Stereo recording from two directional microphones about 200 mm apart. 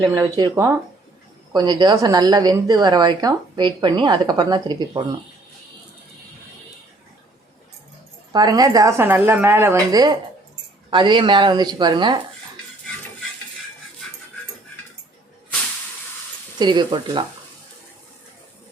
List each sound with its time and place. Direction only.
0.0 s a woman's voice: 20° right (ahead or behind)
8.3 s a woman's voice: 20° right (ahead or behind)
16.6 s a woman's voice: 20° right (ahead or behind)